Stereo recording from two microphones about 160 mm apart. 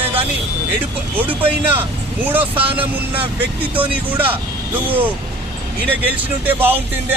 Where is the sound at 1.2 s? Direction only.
10° right (ahead or behind).